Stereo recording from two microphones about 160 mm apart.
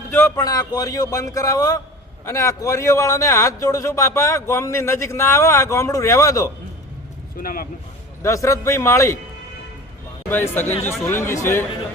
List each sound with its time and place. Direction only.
0.1 s a man's voice: 15° left (ahead or behind)
7.3 s speech: 60° left (ahead or behind)
8.2 s a man's voice: 20° left (ahead or behind)
10.2 s a man's voice: 10° left (ahead or behind)